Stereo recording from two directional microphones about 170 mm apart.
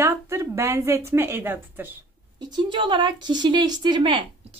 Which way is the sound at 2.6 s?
30° right (ahead or behind).